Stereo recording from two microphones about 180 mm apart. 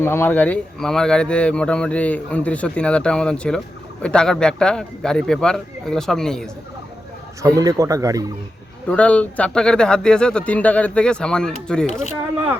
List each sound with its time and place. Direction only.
0.0 s speech: 15° left (ahead or behind)
7.4 s speech: 20° right (ahead or behind)
8.9 s speech: 5° left (ahead or behind)